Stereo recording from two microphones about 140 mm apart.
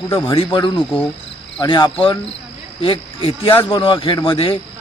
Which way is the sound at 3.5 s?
20° left (ahead or behind).